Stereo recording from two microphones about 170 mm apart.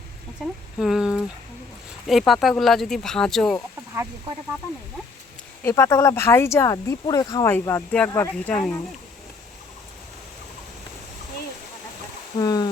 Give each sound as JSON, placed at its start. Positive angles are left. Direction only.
{"t": 0.4, "sound": "speech", "side_deg": 0}
{"t": 5.6, "sound": "speech", "side_deg": 15}
{"t": 12.4, "sound": "speech", "side_deg": 20}